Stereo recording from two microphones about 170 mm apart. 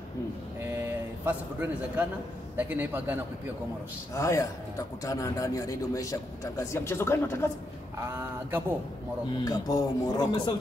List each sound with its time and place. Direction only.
0.7 s a sound: 15° right (ahead or behind)
2.5 s a man's voice: 10° right (ahead or behind)
4.1 s a man's voice: 15° left (ahead or behind)
9.4 s a man's voice: 20° left (ahead or behind)